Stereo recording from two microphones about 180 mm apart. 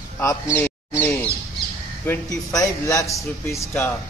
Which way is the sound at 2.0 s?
15° left (ahead or behind).